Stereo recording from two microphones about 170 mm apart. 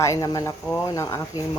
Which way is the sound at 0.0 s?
20° left (ahead or behind).